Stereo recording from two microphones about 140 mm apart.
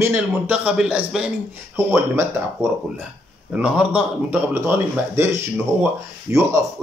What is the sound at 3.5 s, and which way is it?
Speech, 10° right (ahead or behind).